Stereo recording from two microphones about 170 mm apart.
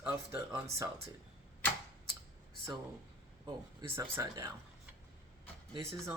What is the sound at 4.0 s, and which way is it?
Speech, 20° right (ahead or behind).